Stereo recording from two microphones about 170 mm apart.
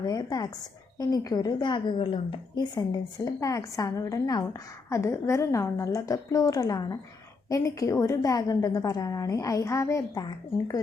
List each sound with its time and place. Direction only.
0.0 s a woman's voice: 20° left (ahead or behind)